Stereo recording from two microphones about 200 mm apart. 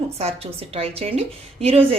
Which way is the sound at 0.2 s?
30° right (ahead or behind).